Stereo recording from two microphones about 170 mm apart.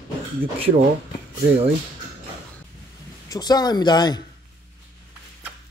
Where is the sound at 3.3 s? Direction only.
25° left (ahead or behind).